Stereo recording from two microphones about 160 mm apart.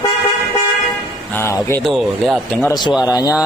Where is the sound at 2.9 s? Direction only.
10° right (ahead or behind).